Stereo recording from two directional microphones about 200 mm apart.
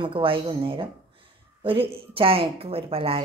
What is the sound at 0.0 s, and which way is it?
Speech, 25° right (ahead or behind).